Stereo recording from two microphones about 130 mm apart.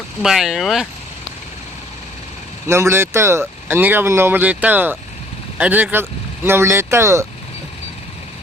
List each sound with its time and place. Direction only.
0.2 s speech: 5° right (ahead or behind)
2.6 s speech: 20° right (ahead or behind)